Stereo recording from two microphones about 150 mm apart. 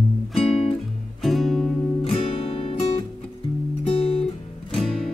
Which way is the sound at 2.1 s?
40° left (ahead or behind).